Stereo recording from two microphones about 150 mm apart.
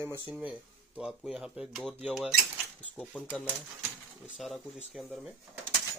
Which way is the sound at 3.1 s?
10° left (ahead or behind).